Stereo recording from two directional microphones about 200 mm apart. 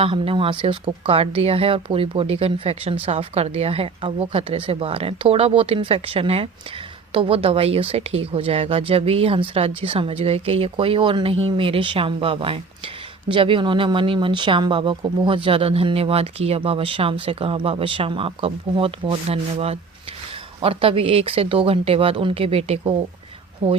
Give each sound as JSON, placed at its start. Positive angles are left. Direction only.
{"t": 0.0, "sound": "speech", "side_deg": -25}